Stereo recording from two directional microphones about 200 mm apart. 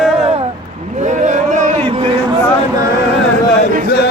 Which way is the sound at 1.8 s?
30° right (ahead or behind).